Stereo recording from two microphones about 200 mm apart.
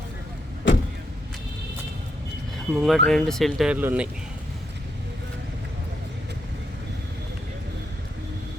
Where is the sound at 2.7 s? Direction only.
Centre (ahead or behind).